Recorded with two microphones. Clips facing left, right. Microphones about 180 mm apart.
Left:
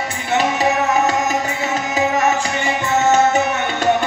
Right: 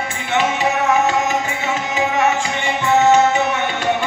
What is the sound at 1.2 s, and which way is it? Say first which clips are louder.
Tabla: even; 40° left (ahead or behind).